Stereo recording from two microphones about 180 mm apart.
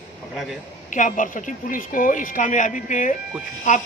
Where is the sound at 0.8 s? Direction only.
45° left (ahead or behind).